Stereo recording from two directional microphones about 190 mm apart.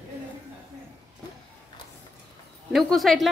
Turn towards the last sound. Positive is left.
turn(degrees=0)  # may be behind; listen again after turning